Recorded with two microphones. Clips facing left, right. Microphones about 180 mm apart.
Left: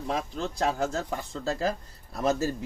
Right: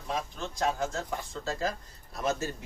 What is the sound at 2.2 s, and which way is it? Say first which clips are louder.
Speech: left 5 dB; 35° left (ahead or behind).